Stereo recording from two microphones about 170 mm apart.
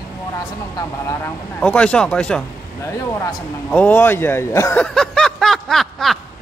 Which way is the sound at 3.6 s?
10° left (ahead or behind).